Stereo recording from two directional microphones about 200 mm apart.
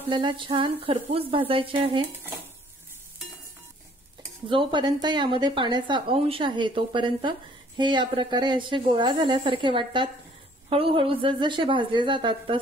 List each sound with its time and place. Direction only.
0.1 s speech: 25° right (ahead or behind)
4.5 s speech: 25° right (ahead or behind)